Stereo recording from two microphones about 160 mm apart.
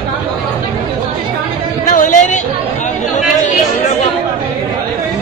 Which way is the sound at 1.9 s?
50° left (ahead or behind).